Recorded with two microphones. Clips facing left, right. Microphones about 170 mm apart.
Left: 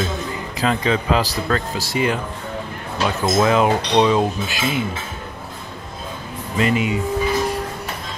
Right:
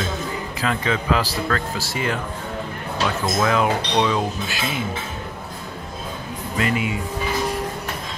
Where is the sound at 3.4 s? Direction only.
25° left (ahead or behind).